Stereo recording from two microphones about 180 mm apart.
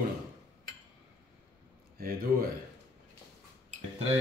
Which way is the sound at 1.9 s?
55° right (ahead or behind).